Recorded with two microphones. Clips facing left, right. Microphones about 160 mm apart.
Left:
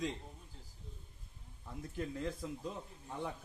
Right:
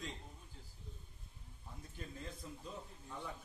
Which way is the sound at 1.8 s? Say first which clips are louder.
Left 10 dB; 75° left (ahead or behind).